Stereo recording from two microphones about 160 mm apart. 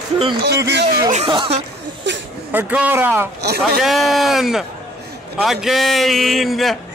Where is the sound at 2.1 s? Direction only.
90° right.